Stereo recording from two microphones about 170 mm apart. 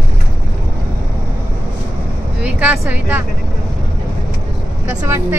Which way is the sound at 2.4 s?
10° right (ahead or behind).